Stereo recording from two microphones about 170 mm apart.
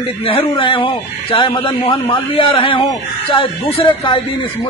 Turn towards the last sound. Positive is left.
turn(degrees=30)  # may be behind; listen again after turning